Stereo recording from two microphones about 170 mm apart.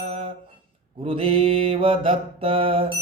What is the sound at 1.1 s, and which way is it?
Speech, 35° right (ahead or behind).